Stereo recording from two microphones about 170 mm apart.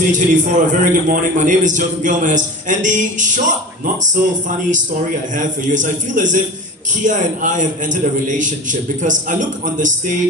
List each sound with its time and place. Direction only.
0.1 s a man's voice: 50° right (ahead or behind)
5.3 s a man's voice: 50° right (ahead or behind)